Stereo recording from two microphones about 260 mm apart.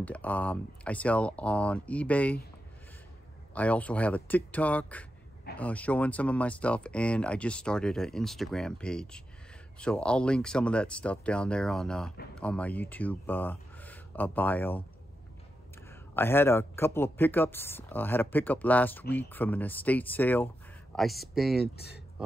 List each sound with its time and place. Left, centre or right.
0.0 s speech: centre
3.5 s speech: centre
15.9 s speech: centre
21.7 s speech: left